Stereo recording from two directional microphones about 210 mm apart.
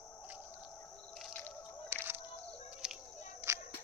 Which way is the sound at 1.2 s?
5° left (ahead or behind).